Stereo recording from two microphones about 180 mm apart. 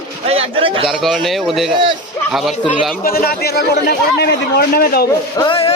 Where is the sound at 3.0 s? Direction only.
55° left (ahead or behind).